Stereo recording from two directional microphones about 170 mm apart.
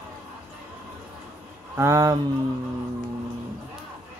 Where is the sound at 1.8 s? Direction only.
20° right (ahead or behind).